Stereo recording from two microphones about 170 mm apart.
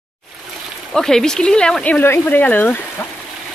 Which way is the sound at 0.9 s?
5° left (ahead or behind).